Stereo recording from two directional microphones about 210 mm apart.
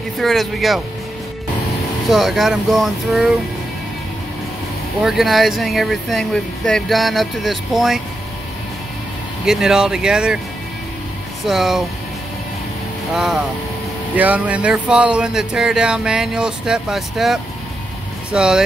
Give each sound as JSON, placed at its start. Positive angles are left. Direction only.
{"t": 0.2, "sound": "speech", "side_deg": 0}
{"t": 2.0, "sound": "speech", "side_deg": 0}
{"t": 5.0, "sound": "speech", "side_deg": 0}
{"t": 9.5, "sound": "speech", "side_deg": -5}
{"t": 11.4, "sound": "speech", "side_deg": 0}
{"t": 13.1, "sound": "speech", "side_deg": -5}